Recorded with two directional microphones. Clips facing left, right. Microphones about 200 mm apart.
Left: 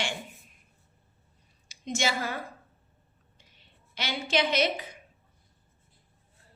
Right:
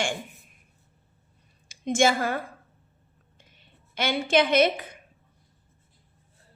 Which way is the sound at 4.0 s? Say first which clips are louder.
Right 6 dB; 55° right (ahead or behind).